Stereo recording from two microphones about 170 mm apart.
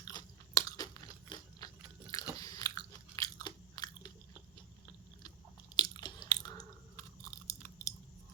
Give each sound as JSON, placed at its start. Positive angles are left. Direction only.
{"t": 0.1, "sound": "crunch", "side_deg": 20}
{"t": 2.4, "sound": "biting", "side_deg": 20}
{"t": 5.7, "sound": "chewing", "side_deg": 25}